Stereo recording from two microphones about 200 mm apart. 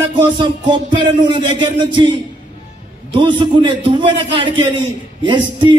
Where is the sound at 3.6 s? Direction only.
25° right (ahead or behind).